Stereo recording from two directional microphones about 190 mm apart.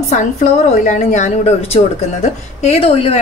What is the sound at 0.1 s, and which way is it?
A woman's voice, 40° left (ahead or behind).